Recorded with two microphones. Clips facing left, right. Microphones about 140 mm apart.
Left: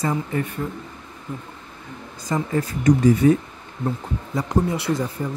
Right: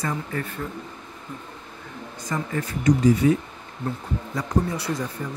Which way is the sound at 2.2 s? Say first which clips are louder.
Left 5 dB; 30° left (ahead or behind).